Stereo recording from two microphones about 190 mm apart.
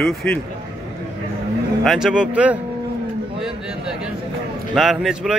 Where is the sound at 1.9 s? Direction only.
Centre (ahead or behind).